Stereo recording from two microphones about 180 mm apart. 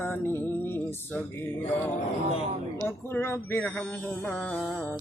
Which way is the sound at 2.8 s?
10° left (ahead or behind).